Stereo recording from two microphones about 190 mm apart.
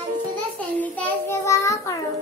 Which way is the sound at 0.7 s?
10° left (ahead or behind).